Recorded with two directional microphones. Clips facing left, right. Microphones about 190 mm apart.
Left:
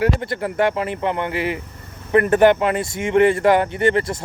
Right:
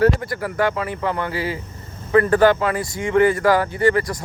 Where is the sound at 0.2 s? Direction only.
25° left (ahead or behind).